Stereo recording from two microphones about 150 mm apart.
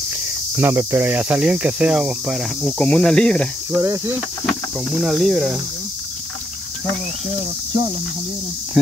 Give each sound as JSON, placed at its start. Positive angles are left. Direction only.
{"t": 0.6, "sound": "cricket", "side_deg": -15}
{"t": 2.8, "sound": "speech", "side_deg": 5}
{"t": 3.7, "sound": "speech", "side_deg": -20}
{"t": 4.5, "sound": "speech", "side_deg": 0}